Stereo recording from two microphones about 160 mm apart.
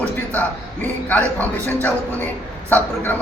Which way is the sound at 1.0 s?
10° left (ahead or behind).